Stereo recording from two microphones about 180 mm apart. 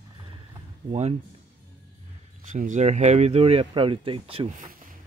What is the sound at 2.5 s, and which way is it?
Speech, 45° right (ahead or behind).